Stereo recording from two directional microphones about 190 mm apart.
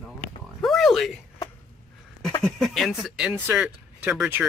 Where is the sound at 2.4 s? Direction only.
Centre (ahead or behind).